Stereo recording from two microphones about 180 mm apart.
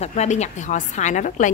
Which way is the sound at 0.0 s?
40° left (ahead or behind).